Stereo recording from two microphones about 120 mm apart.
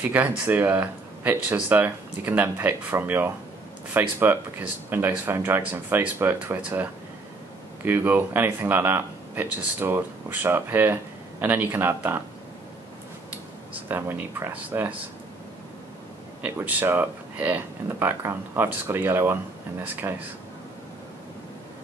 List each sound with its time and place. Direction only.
0.0 s speech: 15° right (ahead or behind)
13.8 s speech: 15° right (ahead or behind)
16.4 s speech: 15° right (ahead or behind)